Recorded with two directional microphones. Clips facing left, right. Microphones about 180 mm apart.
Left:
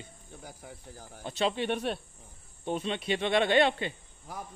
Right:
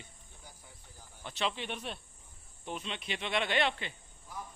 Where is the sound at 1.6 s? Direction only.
60° left (ahead or behind).